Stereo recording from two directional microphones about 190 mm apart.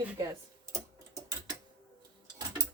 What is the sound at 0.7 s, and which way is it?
Tick-tock, 15° right (ahead or behind).